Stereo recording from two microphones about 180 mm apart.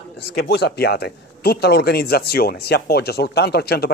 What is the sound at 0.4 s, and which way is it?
Speech, 65° left (ahead or behind).